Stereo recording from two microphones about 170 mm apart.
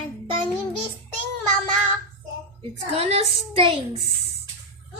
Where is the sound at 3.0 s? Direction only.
35° right (ahead or behind).